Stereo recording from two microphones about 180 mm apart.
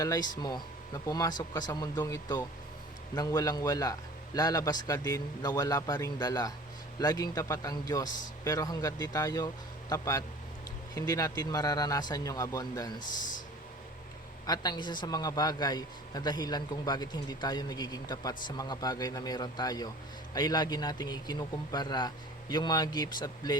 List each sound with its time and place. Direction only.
0.0 s a man's voice: 20° left (ahead or behind)
14.4 s a man's voice: 20° left (ahead or behind)